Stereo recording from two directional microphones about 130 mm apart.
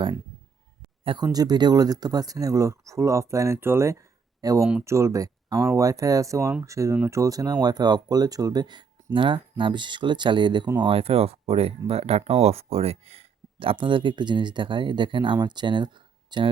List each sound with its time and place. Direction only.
1.2 s speech: 30° right (ahead or behind)